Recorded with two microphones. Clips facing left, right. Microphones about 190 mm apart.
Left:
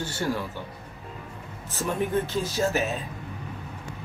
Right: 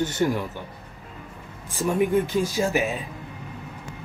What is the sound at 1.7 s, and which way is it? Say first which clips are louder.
Speech: right 5 dB; 10° right (ahead or behind).